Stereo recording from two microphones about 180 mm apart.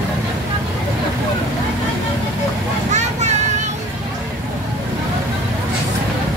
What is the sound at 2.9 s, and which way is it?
Vehicle, 40° right (ahead or behind).